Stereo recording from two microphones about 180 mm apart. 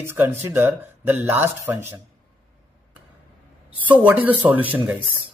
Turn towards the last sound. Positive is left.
turn(degrees=-10)  # may be behind; listen again after turning